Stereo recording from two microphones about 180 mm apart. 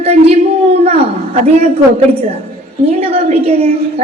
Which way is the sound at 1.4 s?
35° right (ahead or behind).